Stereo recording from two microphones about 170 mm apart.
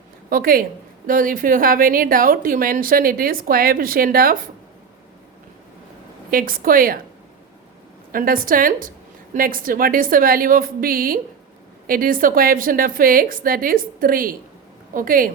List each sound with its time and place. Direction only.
0.3 s speech: 60° right (ahead or behind)
6.3 s speech: 55° right (ahead or behind)
8.1 s speech: 55° right (ahead or behind)